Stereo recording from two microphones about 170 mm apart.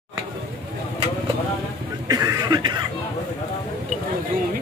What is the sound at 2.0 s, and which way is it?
Cough, 20° right (ahead or behind).